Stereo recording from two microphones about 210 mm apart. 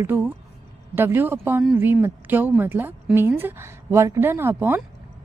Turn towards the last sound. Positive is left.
turn(degrees=-10)  # may be behind; listen again after turning